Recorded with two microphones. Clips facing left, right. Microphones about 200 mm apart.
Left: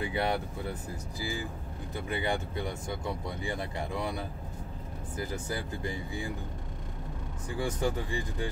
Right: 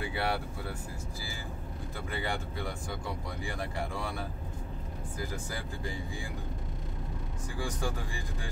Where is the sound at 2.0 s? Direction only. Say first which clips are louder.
Left 4 dB; 20° left (ahead or behind).